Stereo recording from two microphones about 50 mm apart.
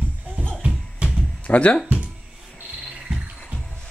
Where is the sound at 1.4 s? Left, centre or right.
Left.